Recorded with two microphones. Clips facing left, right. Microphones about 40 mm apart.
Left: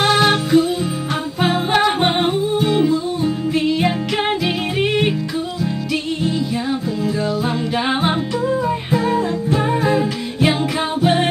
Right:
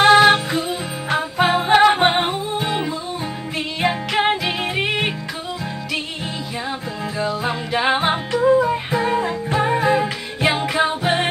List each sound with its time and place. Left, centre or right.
0.0 s music: centre
7.4 s music: centre
8.3 s music: centre